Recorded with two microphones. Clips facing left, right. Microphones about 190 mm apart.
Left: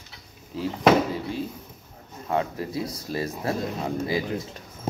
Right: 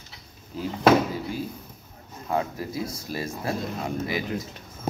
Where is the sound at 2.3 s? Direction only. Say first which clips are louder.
Left 1 dB; 30° left (ahead or behind).